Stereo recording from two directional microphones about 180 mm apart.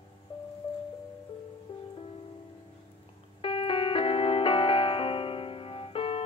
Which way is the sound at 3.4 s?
30° left (ahead or behind).